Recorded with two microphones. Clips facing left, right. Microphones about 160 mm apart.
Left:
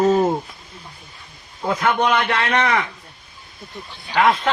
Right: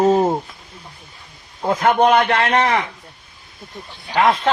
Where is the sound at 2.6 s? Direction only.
30° right (ahead or behind).